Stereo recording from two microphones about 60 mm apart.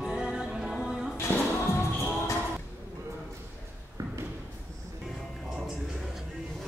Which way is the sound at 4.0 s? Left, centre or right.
Right.